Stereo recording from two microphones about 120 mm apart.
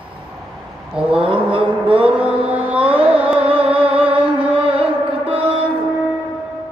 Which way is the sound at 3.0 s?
10° right (ahead or behind).